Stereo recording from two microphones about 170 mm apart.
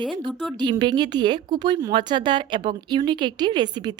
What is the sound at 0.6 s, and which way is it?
A woman's voice, 25° right (ahead or behind).